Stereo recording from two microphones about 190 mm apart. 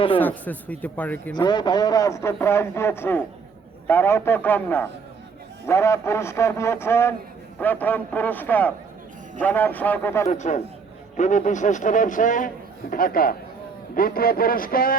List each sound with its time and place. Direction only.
0.2 s a man's voice: 10° left (ahead or behind)
1.4 s a man's voice: 20° left (ahead or behind)
10.2 s a man's voice: 40° left (ahead or behind)